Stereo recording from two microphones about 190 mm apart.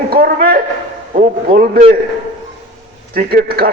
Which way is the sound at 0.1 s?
50° right (ahead or behind).